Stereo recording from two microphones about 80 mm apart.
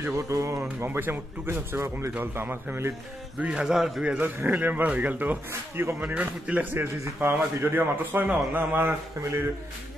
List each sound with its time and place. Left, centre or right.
0.0 s speech: right
0.8 s a man's voice: right
3.3 s a sound: centre
4.2 s a man's voice: right
5.5 s speech: right
5.9 s a man's voice: centre